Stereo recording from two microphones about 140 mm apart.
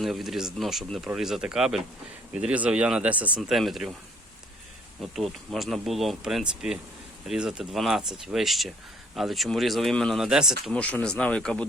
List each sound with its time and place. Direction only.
0.0 s speech: centre (ahead or behind)
5.1 s speech: centre (ahead or behind)
10.6 s speech: 10° left (ahead or behind)